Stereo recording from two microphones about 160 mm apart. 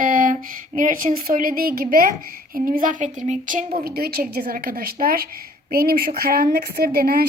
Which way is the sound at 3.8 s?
70° right (ahead or behind).